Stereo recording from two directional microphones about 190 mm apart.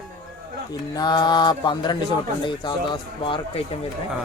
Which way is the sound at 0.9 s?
20° left (ahead or behind).